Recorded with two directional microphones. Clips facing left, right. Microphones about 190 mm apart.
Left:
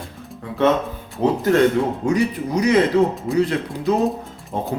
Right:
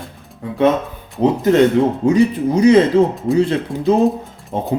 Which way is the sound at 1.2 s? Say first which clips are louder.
Right 4 dB; 20° right (ahead or behind).